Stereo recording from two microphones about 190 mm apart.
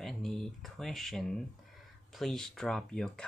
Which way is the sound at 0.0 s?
Centre (ahead or behind).